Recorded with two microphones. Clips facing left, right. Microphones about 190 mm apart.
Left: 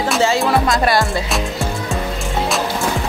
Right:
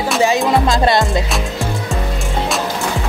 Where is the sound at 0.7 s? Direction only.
25° right (ahead or behind).